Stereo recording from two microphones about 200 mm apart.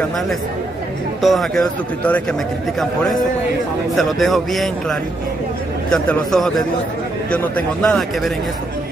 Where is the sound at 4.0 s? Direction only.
Centre (ahead or behind).